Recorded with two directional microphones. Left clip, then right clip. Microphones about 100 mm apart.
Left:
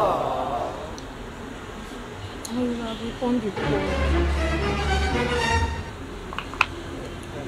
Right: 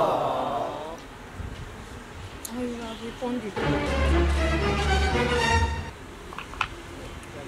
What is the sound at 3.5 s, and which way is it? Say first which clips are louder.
Music: left 1 dB; centre (ahead or behind).